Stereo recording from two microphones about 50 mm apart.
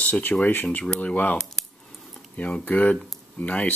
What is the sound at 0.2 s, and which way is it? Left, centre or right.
Speech, left.